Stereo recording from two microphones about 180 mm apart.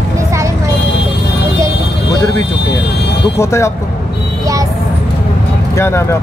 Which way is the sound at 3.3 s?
15° left (ahead or behind).